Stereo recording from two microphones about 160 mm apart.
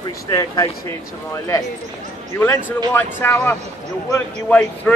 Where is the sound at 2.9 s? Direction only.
15° left (ahead or behind).